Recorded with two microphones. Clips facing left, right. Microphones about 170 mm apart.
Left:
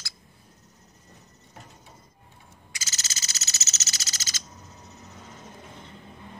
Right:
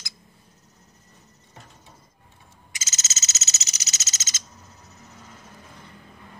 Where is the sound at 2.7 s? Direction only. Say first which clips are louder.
Right 1 dB; 20° right (ahead or behind).